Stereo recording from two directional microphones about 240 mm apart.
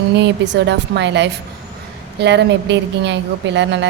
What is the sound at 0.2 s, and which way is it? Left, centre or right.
Speech, right.